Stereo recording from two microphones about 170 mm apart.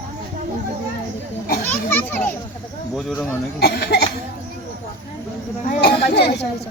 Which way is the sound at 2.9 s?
5° left (ahead or behind).